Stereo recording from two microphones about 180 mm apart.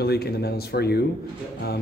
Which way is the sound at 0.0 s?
60° left (ahead or behind).